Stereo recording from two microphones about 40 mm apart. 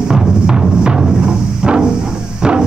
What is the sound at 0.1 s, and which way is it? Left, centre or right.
Music, centre.